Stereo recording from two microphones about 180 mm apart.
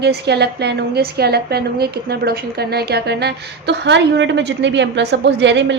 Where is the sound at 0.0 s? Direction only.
65° right (ahead or behind).